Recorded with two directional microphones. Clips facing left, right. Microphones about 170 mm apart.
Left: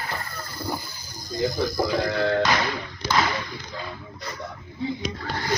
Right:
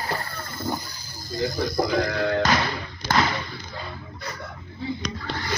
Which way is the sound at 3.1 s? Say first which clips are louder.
Right 1 dB; 50° right (ahead or behind).